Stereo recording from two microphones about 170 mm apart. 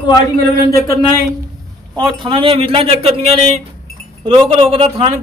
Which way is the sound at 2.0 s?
30° right (ahead or behind).